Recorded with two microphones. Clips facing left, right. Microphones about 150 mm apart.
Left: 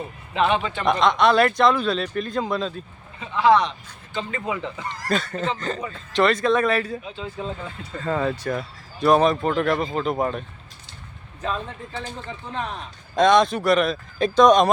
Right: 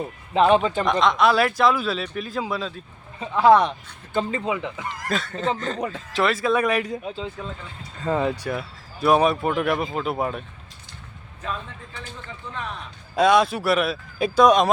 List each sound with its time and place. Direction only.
0.3 s speech: 40° right (ahead or behind)
0.9 s speech: centre (ahead or behind)
3.2 s a man's voice: 45° right (ahead or behind)
4.3 s speech: 20° right (ahead or behind)
4.8 s speech: centre (ahead or behind); by 7.0 s 15° right (ahead or behind)
8.0 s speech: 15° right (ahead or behind)
13.1 s speech: 5° right (ahead or behind)